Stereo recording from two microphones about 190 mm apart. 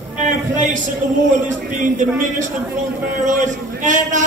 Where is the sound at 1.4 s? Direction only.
40° right (ahead or behind).